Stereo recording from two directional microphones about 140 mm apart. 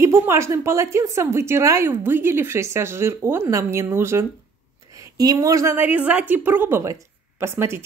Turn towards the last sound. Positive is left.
turn(degrees=-20)  # may be behind; listen again after turning